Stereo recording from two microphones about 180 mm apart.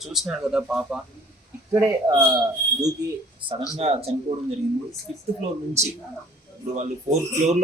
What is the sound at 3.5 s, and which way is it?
Speech, 35° right (ahead or behind).